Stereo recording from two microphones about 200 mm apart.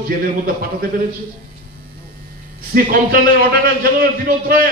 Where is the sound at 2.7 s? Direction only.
45° right (ahead or behind).